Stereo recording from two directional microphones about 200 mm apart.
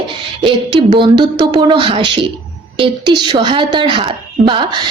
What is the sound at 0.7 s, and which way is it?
A woman's voice, 25° right (ahead or behind).